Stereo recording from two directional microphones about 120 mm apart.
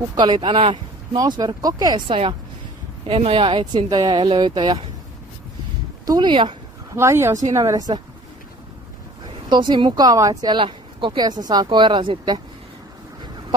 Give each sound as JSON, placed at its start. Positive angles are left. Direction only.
{"t": 0.1, "sound": "speech", "side_deg": -40}
{"t": 1.1, "sound": "speech", "side_deg": -30}
{"t": 2.0, "sound": "speech", "side_deg": -50}
{"t": 6.0, "sound": "speech", "side_deg": -40}
{"t": 6.9, "sound": "speech", "side_deg": -25}
{"t": 9.5, "sound": "speech", "side_deg": -40}